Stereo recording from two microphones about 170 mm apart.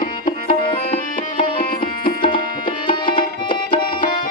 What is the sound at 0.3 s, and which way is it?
Music, 30° left (ahead or behind).